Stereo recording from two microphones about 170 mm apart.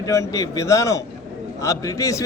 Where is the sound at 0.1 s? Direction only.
20° left (ahead or behind).